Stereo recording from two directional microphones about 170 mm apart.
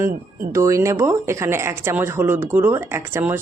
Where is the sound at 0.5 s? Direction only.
15° right (ahead or behind).